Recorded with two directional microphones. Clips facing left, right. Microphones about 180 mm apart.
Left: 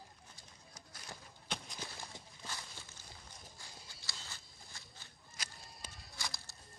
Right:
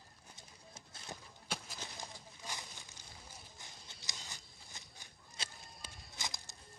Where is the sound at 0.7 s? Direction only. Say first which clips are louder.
Right 3 dB; 25° right (ahead or behind).